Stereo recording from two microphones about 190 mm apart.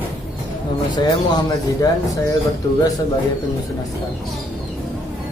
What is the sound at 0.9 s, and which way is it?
Speech, 20° left (ahead or behind).